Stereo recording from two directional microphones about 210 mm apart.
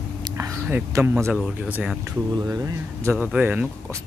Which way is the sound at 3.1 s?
5° right (ahead or behind).